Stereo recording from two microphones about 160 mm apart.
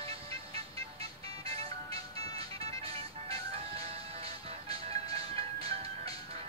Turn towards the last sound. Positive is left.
turn(degrees=-40)  # may be behind; listen again after turning